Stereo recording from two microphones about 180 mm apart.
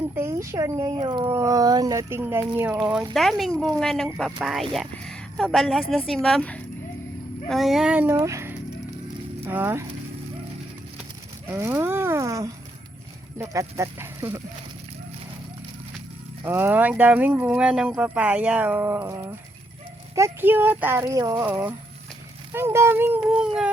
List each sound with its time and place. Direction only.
0.2 s speech: 15° right (ahead or behind)
3.2 s speech: centre (ahead or behind)
11.5 s speech: 15° right (ahead or behind)
13.5 s speech: 15° right (ahead or behind)
16.4 s speech: 10° right (ahead or behind)